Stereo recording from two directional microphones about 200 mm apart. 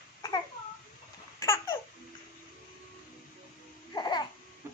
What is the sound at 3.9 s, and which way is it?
Babbling, 20° left (ahead or behind).